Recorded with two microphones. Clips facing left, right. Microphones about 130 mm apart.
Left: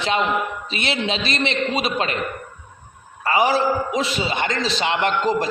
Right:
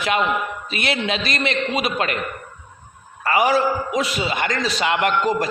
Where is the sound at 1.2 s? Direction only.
45° right (ahead or behind).